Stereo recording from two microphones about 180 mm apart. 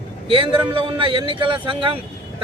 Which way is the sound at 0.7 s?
30° right (ahead or behind).